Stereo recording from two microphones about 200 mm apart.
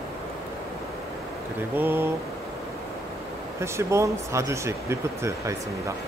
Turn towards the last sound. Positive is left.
turn(degrees=-15)  # may be behind; listen again after turning